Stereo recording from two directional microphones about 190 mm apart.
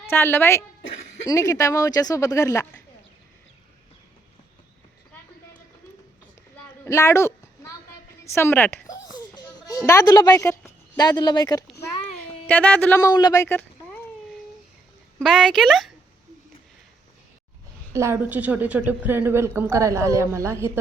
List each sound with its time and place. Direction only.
0.0 s speech: 10° left (ahead or behind)
0.8 s a sound: 80° left
1.3 s speech: 20° left (ahead or behind)
6.8 s a sound: 15° left (ahead or behind)
8.2 s speech: 15° left (ahead or behind)
8.9 s a sound: 20° left (ahead or behind)
10.9 s speech: 20° left (ahead or behind)
12.5 s speech: 10° left (ahead or behind)
15.2 s speech: 5° left (ahead or behind)
17.9 s a woman's voice: 15° right (ahead or behind)